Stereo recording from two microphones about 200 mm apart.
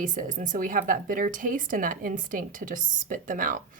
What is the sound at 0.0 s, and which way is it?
Speech, 40° right (ahead or behind).